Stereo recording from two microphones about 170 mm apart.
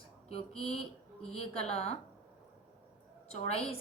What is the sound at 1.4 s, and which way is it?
Speech, 40° left (ahead or behind).